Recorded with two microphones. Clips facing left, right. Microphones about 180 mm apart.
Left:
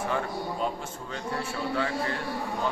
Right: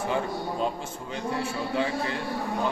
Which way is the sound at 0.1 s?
20° right (ahead or behind).